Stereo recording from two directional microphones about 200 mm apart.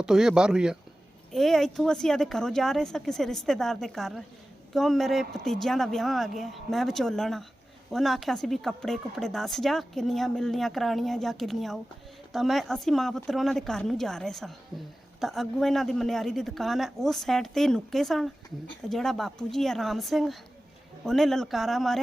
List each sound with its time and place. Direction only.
0.0 s speech: 5° right (ahead or behind)